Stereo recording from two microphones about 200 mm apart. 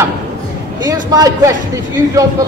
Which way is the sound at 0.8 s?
20° right (ahead or behind).